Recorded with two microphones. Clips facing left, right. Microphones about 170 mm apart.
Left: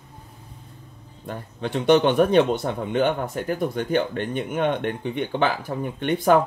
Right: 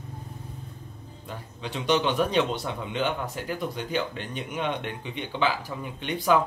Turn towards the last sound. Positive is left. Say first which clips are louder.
# left 5 dB
turn(degrees=55)  # may be behind; listen again after turning